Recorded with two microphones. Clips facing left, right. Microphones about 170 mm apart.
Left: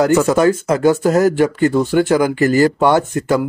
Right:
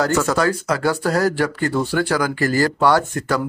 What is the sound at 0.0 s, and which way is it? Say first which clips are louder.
Speech: left 6 dB; 20° left (ahead or behind).